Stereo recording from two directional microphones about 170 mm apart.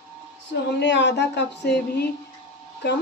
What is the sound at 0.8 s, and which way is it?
A woman's voice, 90° left.